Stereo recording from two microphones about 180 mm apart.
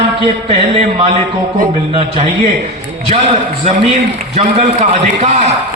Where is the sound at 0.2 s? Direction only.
35° right (ahead or behind).